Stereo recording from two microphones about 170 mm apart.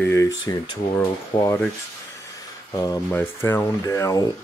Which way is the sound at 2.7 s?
20° left (ahead or behind).